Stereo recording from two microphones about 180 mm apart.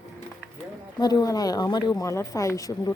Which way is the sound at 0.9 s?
20° left (ahead or behind).